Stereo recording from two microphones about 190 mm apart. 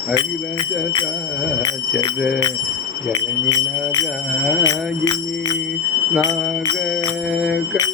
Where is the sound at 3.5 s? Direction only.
15° left (ahead or behind).